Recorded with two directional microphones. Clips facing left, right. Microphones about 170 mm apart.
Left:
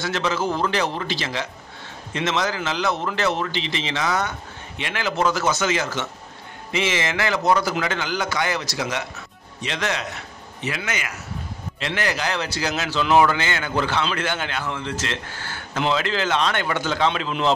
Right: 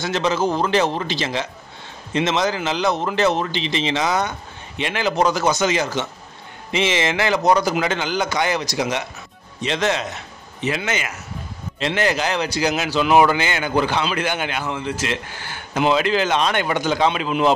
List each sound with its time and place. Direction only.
0.0 s a man's voice: 20° right (ahead or behind)